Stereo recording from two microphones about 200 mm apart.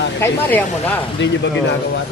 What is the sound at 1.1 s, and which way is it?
Speech, 65° left (ahead or behind).